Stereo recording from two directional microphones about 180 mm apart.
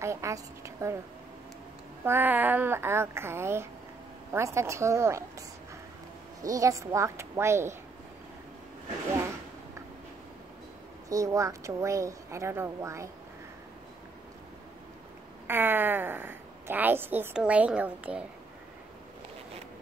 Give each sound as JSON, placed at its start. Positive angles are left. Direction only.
{"t": 0.0, "sound": "a woman's voice", "side_deg": -15}
{"t": 2.0, "sound": "a woman's voice", "side_deg": -10}
{"t": 6.4, "sound": "a woman's voice", "side_deg": -20}
{"t": 11.1, "sound": "a woman's voice", "side_deg": -20}
{"t": 15.4, "sound": "a woman's voice", "side_deg": -10}